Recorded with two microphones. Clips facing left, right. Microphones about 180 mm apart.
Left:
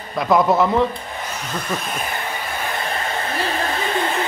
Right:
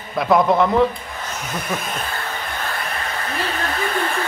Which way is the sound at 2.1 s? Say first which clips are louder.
Left 1 dB; 15° left (ahead or behind).